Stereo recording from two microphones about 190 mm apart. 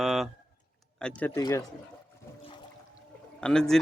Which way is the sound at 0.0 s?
Centre (ahead or behind).